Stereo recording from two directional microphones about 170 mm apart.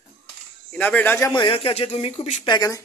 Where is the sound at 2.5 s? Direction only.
20° left (ahead or behind).